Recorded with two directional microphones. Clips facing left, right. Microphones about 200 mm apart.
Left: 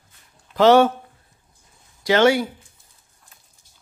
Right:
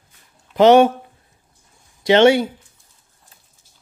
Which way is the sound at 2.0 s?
25° right (ahead or behind).